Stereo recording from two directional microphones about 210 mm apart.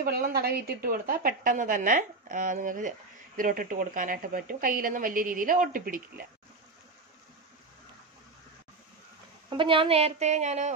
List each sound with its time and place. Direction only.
0.0 s speech: 45° right (ahead or behind)
9.5 s a woman's voice: 25° right (ahead or behind)